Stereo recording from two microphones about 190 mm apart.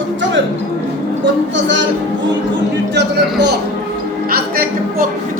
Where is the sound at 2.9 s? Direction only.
60° right (ahead or behind).